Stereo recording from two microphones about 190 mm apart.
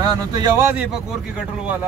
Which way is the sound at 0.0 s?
20° right (ahead or behind).